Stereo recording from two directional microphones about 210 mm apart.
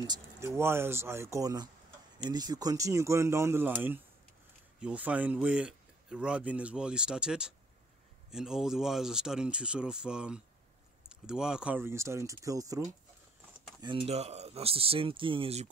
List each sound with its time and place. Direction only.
0.0 s speech: 15° right (ahead or behind)